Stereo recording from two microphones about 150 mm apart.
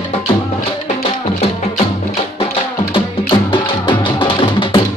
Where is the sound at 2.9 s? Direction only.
35° left (ahead or behind).